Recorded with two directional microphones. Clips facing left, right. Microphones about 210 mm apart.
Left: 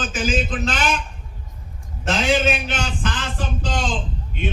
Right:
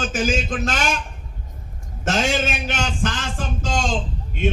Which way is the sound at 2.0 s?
45° right (ahead or behind).